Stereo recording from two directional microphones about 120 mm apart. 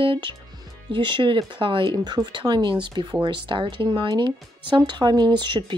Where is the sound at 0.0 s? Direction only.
45° right (ahead or behind).